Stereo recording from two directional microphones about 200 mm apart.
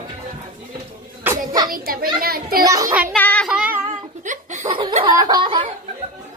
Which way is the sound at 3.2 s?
5° left (ahead or behind).